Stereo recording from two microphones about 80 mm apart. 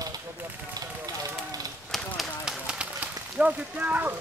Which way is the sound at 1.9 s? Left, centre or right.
Centre.